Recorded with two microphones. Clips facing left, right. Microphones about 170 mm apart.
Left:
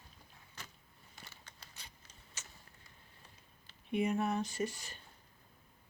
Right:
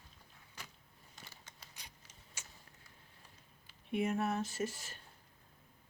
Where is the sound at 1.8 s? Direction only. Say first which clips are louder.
Even; 15° right (ahead or behind).